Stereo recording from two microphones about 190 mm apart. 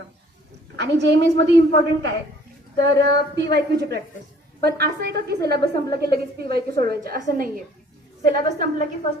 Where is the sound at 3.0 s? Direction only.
60° right (ahead or behind).